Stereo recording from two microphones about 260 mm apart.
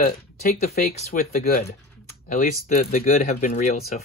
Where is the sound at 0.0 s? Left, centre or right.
Left.